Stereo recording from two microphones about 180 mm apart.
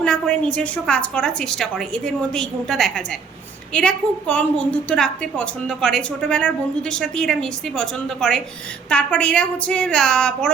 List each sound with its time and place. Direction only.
0.0 s a woman's voice: 5° left (ahead or behind)